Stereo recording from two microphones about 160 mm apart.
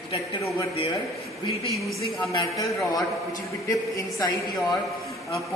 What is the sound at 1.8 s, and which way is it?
Speech, centre (ahead or behind).